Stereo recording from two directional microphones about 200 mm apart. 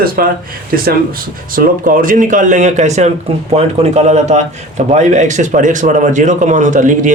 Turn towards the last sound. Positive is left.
turn(degrees=-40)  # may be behind; listen again after turning